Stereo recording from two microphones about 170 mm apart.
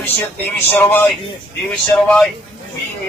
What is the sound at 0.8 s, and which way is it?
Speech, 10° left (ahead or behind).